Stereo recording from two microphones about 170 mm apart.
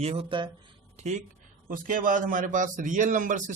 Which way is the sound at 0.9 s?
40° right (ahead or behind).